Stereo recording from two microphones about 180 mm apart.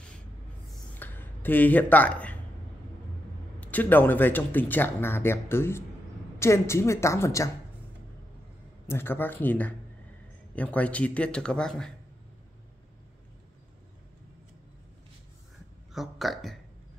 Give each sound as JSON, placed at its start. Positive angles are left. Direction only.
{"t": 0.9, "sound": "a sound", "side_deg": 10}
{"t": 3.6, "sound": "speech", "side_deg": 10}
{"t": 8.8, "sound": "speech", "side_deg": 10}
{"t": 15.9, "sound": "speech", "side_deg": 0}